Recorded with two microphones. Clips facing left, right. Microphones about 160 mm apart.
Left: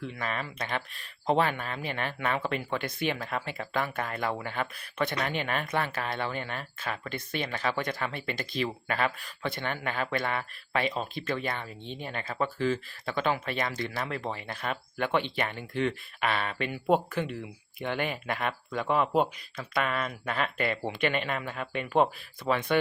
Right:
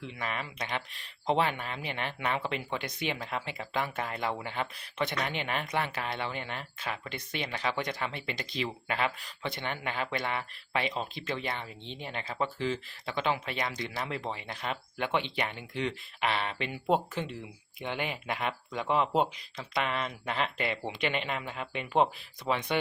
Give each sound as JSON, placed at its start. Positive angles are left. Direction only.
{"t": 0.0, "sound": "speech", "side_deg": -20}